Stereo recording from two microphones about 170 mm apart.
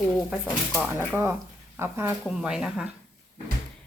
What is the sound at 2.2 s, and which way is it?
Speech, 5° right (ahead or behind).